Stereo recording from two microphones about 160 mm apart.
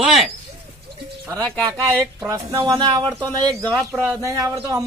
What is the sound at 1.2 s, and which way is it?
Speech, 20° right (ahead or behind).